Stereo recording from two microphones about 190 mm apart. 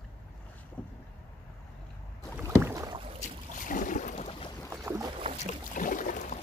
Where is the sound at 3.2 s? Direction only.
45° left (ahead or behind).